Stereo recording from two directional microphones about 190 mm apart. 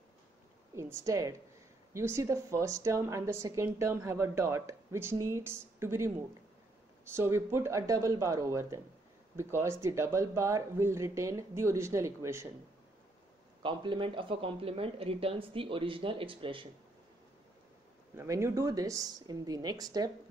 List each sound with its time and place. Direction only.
0.7 s a woman's voice: 15° right (ahead or behind)
13.6 s speech: 25° right (ahead or behind)
18.1 s speech: 15° right (ahead or behind)